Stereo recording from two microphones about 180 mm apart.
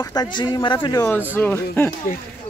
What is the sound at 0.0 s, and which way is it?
Speech, 20° left (ahead or behind).